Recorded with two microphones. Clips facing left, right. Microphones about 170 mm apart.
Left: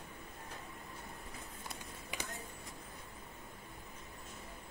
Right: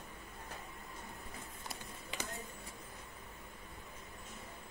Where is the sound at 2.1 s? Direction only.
10° left (ahead or behind).